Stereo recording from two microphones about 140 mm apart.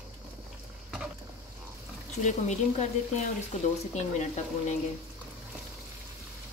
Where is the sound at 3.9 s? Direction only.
55° left (ahead or behind).